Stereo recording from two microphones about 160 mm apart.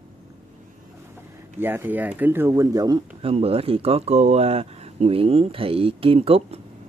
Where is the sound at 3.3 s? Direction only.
40° right (ahead or behind).